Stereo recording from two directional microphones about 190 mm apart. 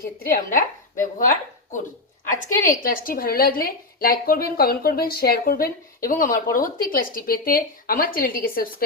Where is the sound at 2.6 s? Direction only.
45° left (ahead or behind).